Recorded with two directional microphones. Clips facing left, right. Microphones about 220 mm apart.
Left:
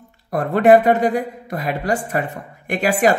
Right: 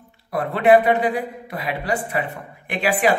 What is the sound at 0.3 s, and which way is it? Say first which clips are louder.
A man's voice: left 3 dB; 45° left (ahead or behind).